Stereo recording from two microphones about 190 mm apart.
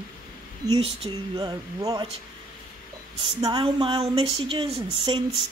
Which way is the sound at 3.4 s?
25° right (ahead or behind).